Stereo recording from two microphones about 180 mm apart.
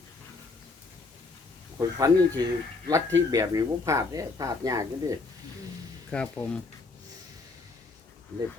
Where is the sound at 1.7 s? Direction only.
20° right (ahead or behind).